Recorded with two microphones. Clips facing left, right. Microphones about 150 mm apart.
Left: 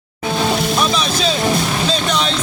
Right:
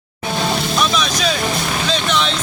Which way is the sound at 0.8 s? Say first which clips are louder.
Left 1 dB; 30° left (ahead or behind).